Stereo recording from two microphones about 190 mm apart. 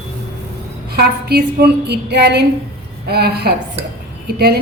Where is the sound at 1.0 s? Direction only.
55° right (ahead or behind).